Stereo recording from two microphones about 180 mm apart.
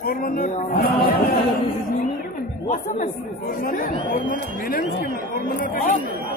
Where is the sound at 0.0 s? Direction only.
55° left (ahead or behind).